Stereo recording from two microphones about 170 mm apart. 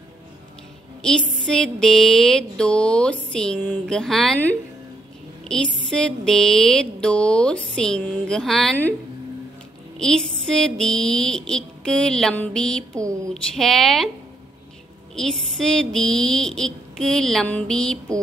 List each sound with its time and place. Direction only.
1.4 s speech: 5° left (ahead or behind)
5.4 s a sound: 5° left (ahead or behind)
5.9 s speech: 5° left (ahead or behind)
9.9 s speech: 5° left (ahead or behind)
13.0 s speech: 20° right (ahead or behind)
13.3 s speech: centre (ahead or behind)
15.1 s speech: centre (ahead or behind)